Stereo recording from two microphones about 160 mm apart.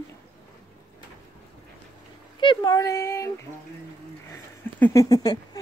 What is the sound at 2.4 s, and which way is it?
Speech, 25° left (ahead or behind).